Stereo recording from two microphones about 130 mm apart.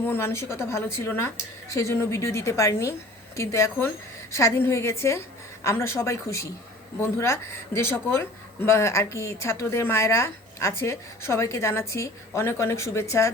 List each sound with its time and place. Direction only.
0.0 s speech: 15° left (ahead or behind)